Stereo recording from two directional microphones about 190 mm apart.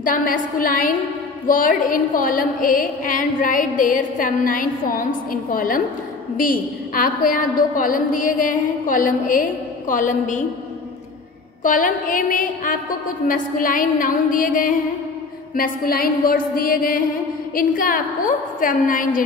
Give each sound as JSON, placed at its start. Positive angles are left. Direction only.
{"t": 0.0, "sound": "a woman's voice", "side_deg": 45}
{"t": 11.6, "sound": "a woman's voice", "side_deg": 45}